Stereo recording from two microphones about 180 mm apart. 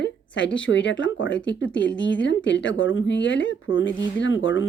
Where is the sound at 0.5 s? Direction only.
90° left.